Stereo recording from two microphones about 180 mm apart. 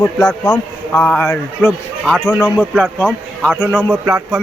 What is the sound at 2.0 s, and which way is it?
Speech, 5° right (ahead or behind).